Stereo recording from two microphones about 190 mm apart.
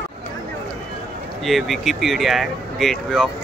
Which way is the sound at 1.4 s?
Centre (ahead or behind).